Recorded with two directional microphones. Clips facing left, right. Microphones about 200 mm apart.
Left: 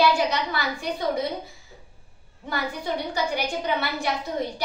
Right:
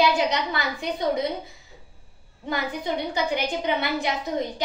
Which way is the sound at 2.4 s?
20° right (ahead or behind).